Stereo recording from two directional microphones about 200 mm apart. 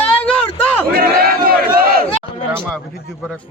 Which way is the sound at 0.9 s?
50° right (ahead or behind).